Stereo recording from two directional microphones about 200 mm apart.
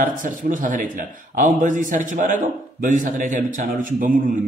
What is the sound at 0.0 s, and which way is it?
A man's voice, 40° right (ahead or behind).